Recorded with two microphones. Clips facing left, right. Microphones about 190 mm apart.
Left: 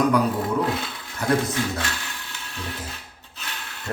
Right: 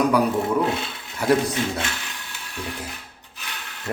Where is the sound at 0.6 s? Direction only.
25° right (ahead or behind).